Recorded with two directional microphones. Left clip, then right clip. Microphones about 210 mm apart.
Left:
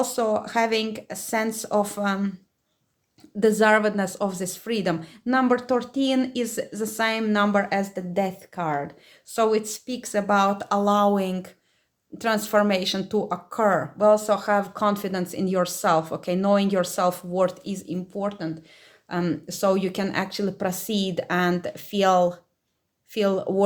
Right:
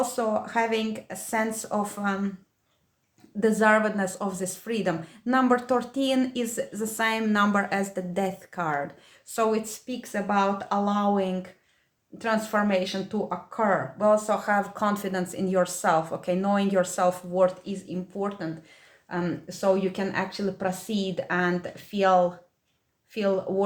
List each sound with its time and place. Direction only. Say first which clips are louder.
0.0 s speech: left 3 dB; 30° left (ahead or behind)
3.4 s speech: left 3 dB; 35° left (ahead or behind)